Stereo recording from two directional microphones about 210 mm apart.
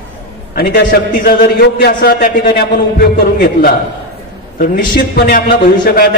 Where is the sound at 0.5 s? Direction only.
45° left (ahead or behind).